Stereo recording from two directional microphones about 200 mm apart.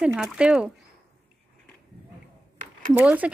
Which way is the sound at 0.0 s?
5° right (ahead or behind).